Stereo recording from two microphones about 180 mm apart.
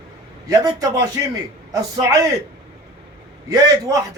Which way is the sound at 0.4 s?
20° right (ahead or behind).